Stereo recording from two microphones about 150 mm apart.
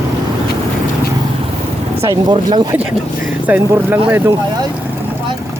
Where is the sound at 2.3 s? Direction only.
30° right (ahead or behind).